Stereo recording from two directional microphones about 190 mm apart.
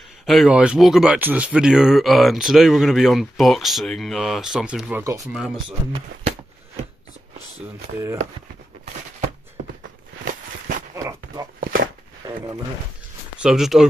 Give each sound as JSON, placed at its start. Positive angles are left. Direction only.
{"t": 0.3, "sound": "speech", "side_deg": 0}
{"t": 5.3, "sound": "speech", "side_deg": 0}
{"t": 11.0, "sound": "dog", "side_deg": -15}
{"t": 11.6, "sound": "a sound", "side_deg": -50}
{"t": 12.3, "sound": "speech", "side_deg": -20}
{"t": 13.4, "sound": "speech", "side_deg": 0}